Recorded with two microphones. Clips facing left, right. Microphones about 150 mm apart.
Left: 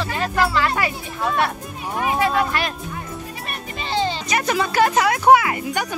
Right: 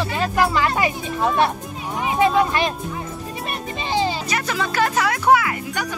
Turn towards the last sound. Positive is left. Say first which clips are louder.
# left 2 dB
turn(degrees=20)  # may be behind; listen again after turning